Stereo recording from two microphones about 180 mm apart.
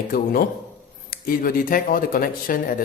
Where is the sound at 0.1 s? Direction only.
55° left (ahead or behind).